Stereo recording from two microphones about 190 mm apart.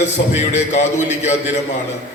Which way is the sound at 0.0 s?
35° left (ahead or behind).